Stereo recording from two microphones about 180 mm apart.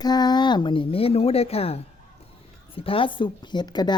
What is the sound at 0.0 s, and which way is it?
A woman's voice, 25° left (ahead or behind).